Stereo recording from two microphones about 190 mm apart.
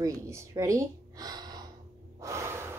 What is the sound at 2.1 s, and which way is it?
Gasp, 15° right (ahead or behind).